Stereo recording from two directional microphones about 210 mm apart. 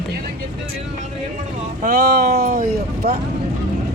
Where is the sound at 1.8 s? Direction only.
30° right (ahead or behind).